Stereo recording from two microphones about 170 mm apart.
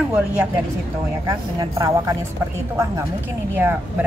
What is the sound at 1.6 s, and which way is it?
Speech, 20° right (ahead or behind).